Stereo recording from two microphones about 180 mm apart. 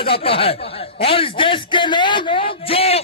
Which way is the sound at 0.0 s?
30° left (ahead or behind).